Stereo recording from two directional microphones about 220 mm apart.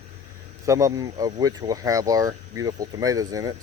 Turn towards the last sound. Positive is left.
turn(degrees=-15)  # may be behind; listen again after turning